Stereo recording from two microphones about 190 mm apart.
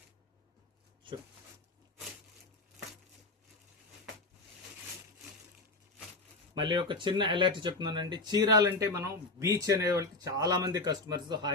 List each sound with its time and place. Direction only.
6.5 s speech: 25° right (ahead or behind)